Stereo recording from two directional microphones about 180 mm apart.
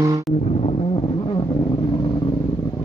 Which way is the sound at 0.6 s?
30° left (ahead or behind).